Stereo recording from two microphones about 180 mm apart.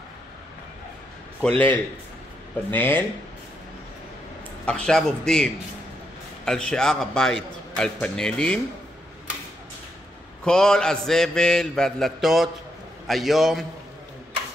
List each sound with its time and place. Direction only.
1.4 s a man's voice: 10° left (ahead or behind)
4.6 s a man's voice: 5° left (ahead or behind)
10.4 s a man's voice: 5° left (ahead or behind)